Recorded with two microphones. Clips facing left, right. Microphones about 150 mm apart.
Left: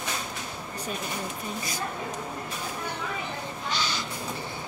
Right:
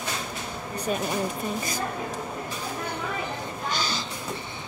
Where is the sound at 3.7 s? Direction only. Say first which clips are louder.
Right 1 dB; 45° right (ahead or behind).